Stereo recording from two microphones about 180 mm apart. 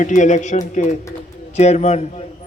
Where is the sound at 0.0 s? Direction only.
45° left (ahead or behind).